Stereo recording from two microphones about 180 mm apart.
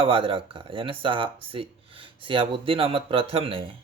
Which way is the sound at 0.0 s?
30° right (ahead or behind).